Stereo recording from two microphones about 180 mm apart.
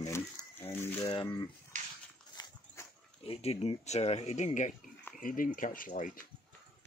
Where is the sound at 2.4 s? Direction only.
20° left (ahead or behind).